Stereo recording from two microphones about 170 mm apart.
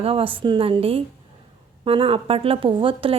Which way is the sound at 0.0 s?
35° right (ahead or behind).